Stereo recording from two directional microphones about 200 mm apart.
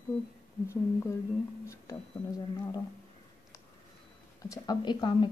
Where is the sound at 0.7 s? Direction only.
15° left (ahead or behind).